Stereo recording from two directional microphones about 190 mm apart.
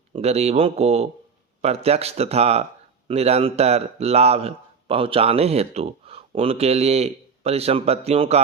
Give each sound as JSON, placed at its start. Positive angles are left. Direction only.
{"t": 0.1, "sound": "speech", "side_deg": -35}